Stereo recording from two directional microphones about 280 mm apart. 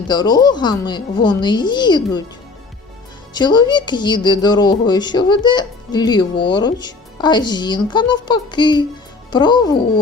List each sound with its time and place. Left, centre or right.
0.1 s speech: centre
3.3 s speech: centre